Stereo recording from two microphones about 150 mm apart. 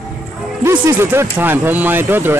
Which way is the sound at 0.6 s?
15° right (ahead or behind).